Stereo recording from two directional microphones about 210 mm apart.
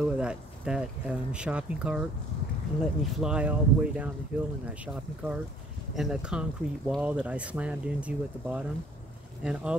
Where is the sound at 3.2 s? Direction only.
5° right (ahead or behind).